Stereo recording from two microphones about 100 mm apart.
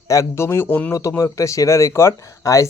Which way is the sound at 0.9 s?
30° left (ahead or behind).